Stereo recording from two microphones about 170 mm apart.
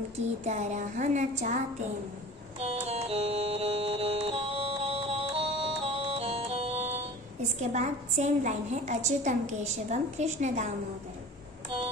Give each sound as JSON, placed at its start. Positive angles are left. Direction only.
{"t": 0.5, "sound": "a woman's voice", "side_deg": -40}
{"t": 2.6, "sound": "music", "side_deg": -35}
{"t": 7.6, "sound": "a woman's voice", "side_deg": -40}